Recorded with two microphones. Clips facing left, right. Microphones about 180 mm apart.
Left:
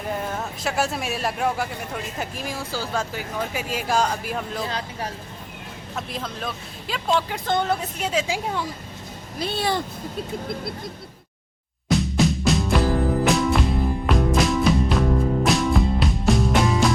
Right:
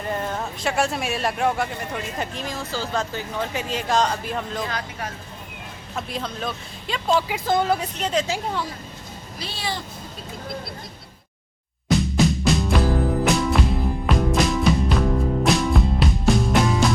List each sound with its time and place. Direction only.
0.0 s speech: 5° left (ahead or behind)
4.6 s speech: 30° left (ahead or behind)
6.0 s speech: centre (ahead or behind)
9.4 s speech: 55° left (ahead or behind)
11.9 s music: centre (ahead or behind)